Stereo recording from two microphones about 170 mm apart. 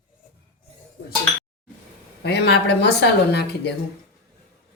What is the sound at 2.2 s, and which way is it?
A woman's voice, 80° left.